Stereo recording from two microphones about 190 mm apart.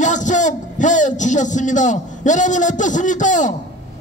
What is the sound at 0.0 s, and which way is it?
A man's voice, 40° left (ahead or behind).